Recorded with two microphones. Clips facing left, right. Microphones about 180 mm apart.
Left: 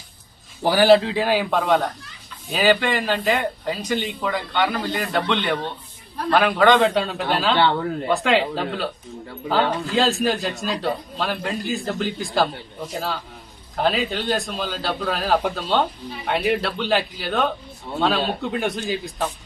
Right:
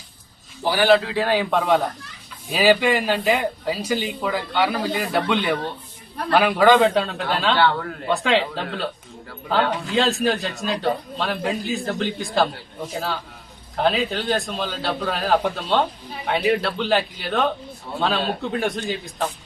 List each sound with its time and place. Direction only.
0.6 s a man's voice: 40° left (ahead or behind)
1.0 s speech: 15° left (ahead or behind)
7.5 s a man's voice: 20° left (ahead or behind)
8.1 s speech: centre (ahead or behind)
13.7 s speech: centre (ahead or behind)